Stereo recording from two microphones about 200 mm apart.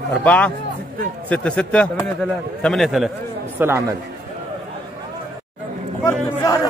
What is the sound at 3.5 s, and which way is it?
Speech, 10° right (ahead or behind).